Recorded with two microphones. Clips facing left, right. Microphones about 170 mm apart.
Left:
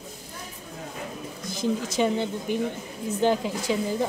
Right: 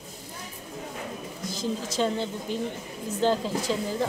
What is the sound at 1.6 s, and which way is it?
Speech, 15° left (ahead or behind).